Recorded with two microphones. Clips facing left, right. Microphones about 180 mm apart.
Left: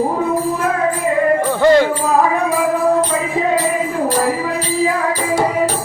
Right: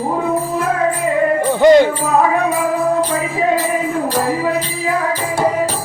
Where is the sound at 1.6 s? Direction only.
15° right (ahead or behind).